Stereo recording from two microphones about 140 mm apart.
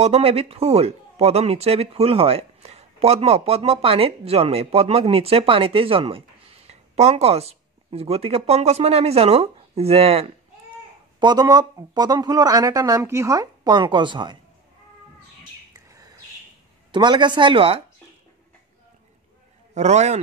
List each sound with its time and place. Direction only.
0.0 s speech: 45° right (ahead or behind)
11.1 s speech: 30° right (ahead or behind)
16.9 s speech: 35° right (ahead or behind)
19.7 s a man's voice: 55° right (ahead or behind)